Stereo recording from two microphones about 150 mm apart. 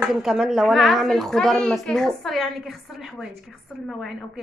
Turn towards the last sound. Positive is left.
turn(degrees=0)  # may be behind; listen again after turning